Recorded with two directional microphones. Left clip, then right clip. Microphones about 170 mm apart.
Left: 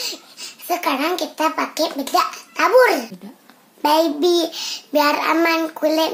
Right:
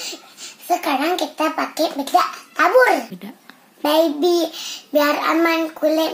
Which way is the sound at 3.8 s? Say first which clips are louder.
Even; 15° left (ahead or behind).